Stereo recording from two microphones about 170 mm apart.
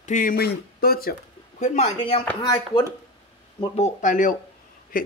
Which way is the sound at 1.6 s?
45° left (ahead or behind).